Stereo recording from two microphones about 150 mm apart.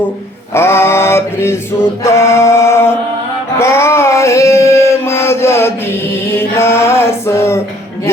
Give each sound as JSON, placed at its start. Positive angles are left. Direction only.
{"t": 0.5, "sound": "mantra", "side_deg": 15}
{"t": 3.6, "sound": "chant", "side_deg": 15}
{"t": 6.3, "sound": "mantra", "side_deg": 15}